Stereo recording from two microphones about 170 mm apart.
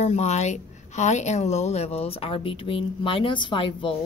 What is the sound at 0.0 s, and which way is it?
Speech, 40° left (ahead or behind).